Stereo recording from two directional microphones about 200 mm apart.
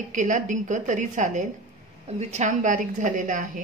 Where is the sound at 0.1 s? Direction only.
40° right (ahead or behind).